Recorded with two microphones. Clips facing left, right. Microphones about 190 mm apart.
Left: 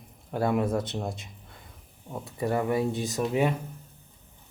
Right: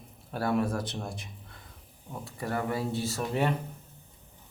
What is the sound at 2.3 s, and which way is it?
Speech, 20° left (ahead or behind).